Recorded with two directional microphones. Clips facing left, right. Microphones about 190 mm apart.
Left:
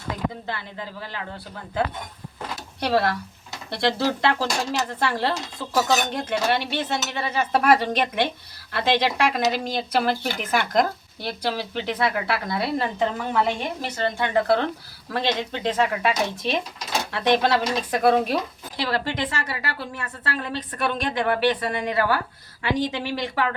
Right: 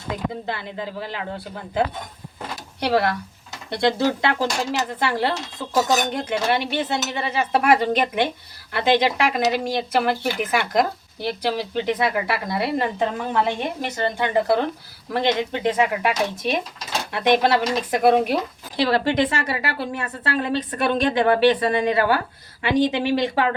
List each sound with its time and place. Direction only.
0.4 s a woman's voice: 20° right (ahead or behind)
2.8 s a woman's voice: 20° right (ahead or behind)